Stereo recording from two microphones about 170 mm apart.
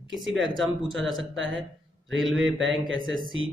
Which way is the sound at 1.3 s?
90° right.